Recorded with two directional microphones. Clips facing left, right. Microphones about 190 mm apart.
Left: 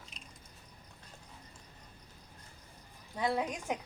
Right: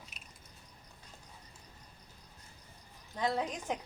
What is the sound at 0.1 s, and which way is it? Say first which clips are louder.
Biting: left 3 dB; 5° right (ahead or behind).